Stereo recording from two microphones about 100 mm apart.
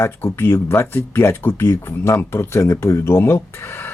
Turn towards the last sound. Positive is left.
turn(degrees=25)  # may be behind; listen again after turning